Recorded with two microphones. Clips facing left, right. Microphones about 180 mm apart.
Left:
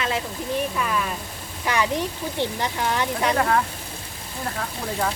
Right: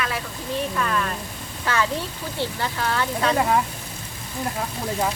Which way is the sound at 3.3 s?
10° right (ahead or behind).